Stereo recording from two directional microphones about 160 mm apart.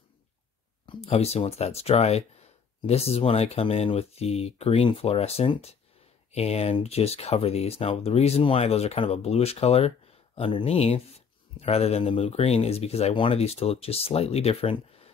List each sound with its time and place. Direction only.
0.8 s speech: 40° left (ahead or behind)